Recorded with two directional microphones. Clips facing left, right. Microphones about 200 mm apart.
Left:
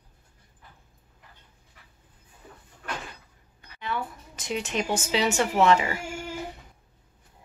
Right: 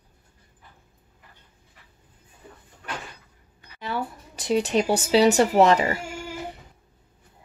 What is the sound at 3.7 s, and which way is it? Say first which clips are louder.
Speech: right 2 dB; 35° right (ahead or behind).